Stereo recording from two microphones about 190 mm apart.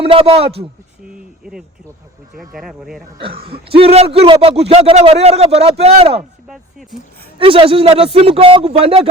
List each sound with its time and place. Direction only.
0.0 s a man's voice: 30° right (ahead or behind)
1.1 s a sound: 5° right (ahead or behind)
2.5 s speech: centre (ahead or behind)
3.4 s a man's voice: 30° right (ahead or behind)
7.3 s a man's voice: 30° right (ahead or behind)